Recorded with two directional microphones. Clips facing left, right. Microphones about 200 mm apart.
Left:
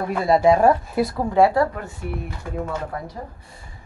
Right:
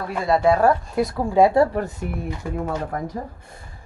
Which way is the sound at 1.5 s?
30° right (ahead or behind).